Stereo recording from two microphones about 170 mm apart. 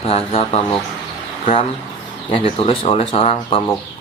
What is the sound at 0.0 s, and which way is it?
Speech, 35° left (ahead or behind).